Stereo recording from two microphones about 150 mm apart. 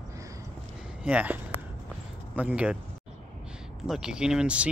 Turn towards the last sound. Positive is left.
turn(degrees=-5)  # may be behind; listen again after turning